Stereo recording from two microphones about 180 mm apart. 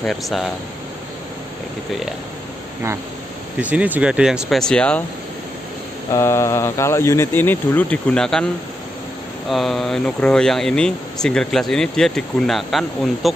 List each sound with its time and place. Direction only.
0.0 s speech: centre (ahead or behind)
3.5 s speech: 5° right (ahead or behind)
6.1 s speech: 15° left (ahead or behind)
9.5 s speech: centre (ahead or behind)